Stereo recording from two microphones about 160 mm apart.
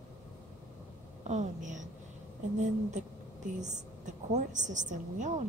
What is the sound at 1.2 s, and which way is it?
Speech, 50° right (ahead or behind).